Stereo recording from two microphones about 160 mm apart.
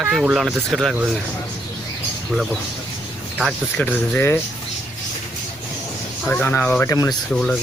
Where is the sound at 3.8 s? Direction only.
10° left (ahead or behind).